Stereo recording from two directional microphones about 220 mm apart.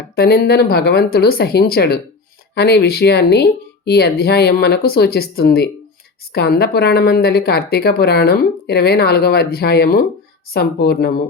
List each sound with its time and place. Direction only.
0.2 s a woman's voice: 45° left (ahead or behind)